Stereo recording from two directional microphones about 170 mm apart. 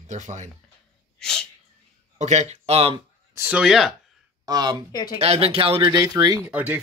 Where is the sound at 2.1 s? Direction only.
45° right (ahead or behind).